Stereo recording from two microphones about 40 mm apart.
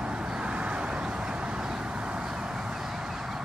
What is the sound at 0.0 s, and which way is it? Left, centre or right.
Vehicle, right.